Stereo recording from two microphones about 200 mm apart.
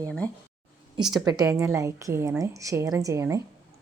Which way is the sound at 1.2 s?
15° right (ahead or behind).